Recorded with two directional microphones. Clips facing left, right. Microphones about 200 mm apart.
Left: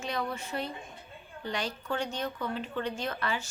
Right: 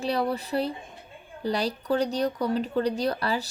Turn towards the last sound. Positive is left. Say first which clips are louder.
# right 7 dB
turn(degrees=-35)  # may be behind; listen again after turning